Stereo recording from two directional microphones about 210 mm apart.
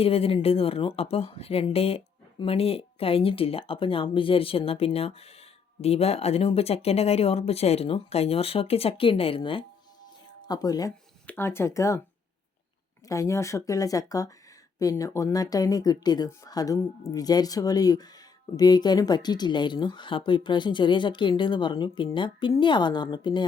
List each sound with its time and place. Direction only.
0.0 s speech: 25° left (ahead or behind)
13.1 s speech: 15° left (ahead or behind)